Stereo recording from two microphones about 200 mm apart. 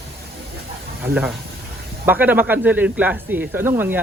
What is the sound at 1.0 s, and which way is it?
Speech, 5° right (ahead or behind).